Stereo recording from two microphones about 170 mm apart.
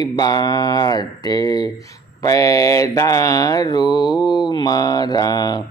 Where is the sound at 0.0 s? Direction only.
25° left (ahead or behind).